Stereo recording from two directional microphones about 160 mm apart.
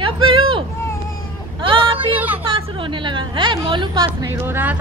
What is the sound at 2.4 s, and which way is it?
A woman's voice, 35° right (ahead or behind).